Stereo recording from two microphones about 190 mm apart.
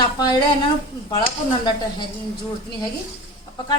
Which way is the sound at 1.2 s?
25° left (ahead or behind).